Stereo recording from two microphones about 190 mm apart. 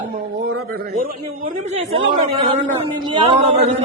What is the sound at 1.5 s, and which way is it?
Speech, 35° right (ahead or behind).